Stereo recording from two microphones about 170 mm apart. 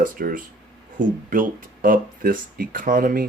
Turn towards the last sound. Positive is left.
turn(degrees=-55)  # may be behind; listen again after turning